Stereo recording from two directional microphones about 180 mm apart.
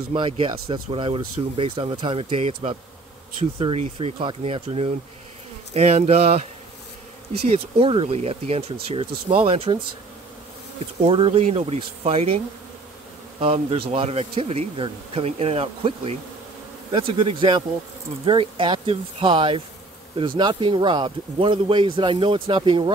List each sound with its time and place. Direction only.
0.1 s speech: 30° right (ahead or behind)
7.4 s speech: 35° right (ahead or behind)
11.1 s speech: 30° right (ahead or behind)
13.4 s speech: 30° right (ahead or behind)